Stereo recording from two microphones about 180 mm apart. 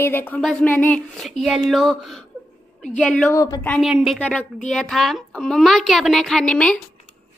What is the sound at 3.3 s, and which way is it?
Speech, 15° left (ahead or behind).